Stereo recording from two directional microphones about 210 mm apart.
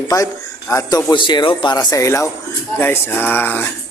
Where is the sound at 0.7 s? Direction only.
15° left (ahead or behind).